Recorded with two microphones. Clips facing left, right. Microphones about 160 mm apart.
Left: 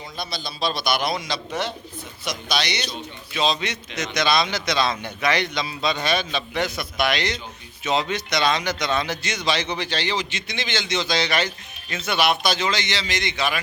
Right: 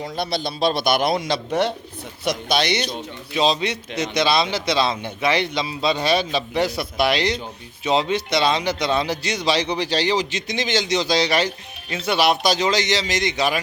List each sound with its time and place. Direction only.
0.0 s a man's voice: 65° right (ahead or behind); by 2.9 s 50° right (ahead or behind)
3.3 s a man's voice: 35° right (ahead or behind)